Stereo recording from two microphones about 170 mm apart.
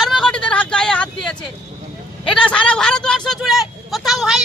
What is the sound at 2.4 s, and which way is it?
Speech, 5° left (ahead or behind).